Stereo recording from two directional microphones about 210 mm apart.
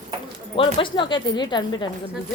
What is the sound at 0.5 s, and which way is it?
Speech, 25° left (ahead or behind).